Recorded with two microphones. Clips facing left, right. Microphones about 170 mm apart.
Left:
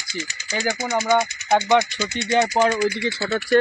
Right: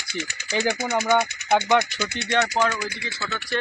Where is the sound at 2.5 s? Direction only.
30° left (ahead or behind).